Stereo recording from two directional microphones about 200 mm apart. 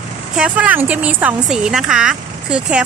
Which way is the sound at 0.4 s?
10° right (ahead or behind).